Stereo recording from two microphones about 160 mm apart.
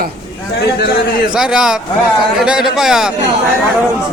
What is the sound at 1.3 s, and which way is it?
A man's voice, 5° right (ahead or behind).